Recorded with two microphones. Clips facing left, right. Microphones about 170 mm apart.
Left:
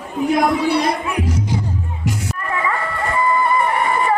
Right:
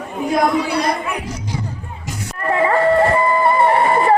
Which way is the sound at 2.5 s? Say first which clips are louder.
Right 10 dB; 35° right (ahead or behind).